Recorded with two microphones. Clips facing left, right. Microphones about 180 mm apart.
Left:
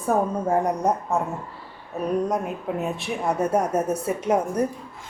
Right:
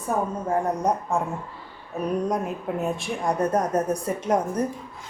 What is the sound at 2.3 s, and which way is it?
A woman's voice, centre (ahead or behind).